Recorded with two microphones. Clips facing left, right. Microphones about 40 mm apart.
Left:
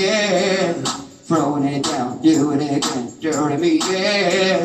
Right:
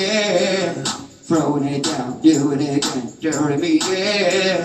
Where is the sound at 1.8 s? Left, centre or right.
Left.